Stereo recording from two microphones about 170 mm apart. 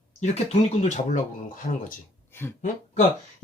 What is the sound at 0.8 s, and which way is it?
Speech, 50° left (ahead or behind).